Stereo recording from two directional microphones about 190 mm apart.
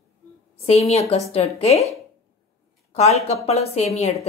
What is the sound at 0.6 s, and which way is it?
A woman's voice, 35° left (ahead or behind).